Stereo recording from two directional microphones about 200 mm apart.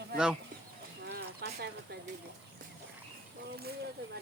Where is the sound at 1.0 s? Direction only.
55° right (ahead or behind).